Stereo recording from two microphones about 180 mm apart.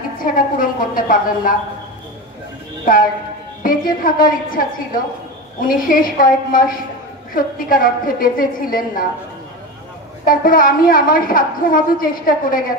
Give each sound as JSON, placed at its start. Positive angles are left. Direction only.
{"t": 0.2, "sound": "a sound", "side_deg": 50}
{"t": 2.9, "sound": "a woman's voice", "side_deg": 50}
{"t": 10.2, "sound": "a woman's voice", "side_deg": 50}